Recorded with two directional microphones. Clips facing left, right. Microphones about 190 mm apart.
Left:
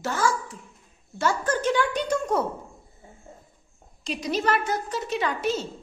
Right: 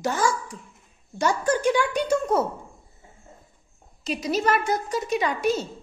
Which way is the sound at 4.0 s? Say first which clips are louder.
Right 2 dB; 5° right (ahead or behind).